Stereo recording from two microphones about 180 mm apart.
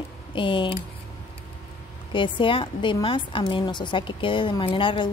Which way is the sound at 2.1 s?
25° left (ahead or behind).